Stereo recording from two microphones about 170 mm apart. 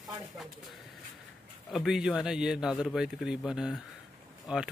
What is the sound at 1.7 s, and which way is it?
A man's voice, centre (ahead or behind).